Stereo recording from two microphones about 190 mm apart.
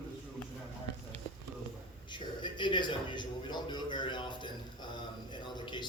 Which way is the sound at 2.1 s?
25° left (ahead or behind).